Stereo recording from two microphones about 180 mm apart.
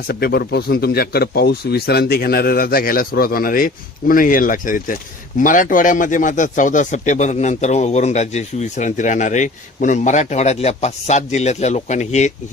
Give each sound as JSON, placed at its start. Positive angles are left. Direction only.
{"t": 0.1, "sound": "speech", "side_deg": 60}